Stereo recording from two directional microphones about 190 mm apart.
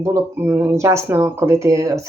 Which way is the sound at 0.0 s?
15° right (ahead or behind).